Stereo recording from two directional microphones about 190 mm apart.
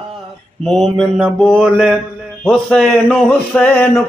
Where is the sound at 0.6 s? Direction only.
5° left (ahead or behind).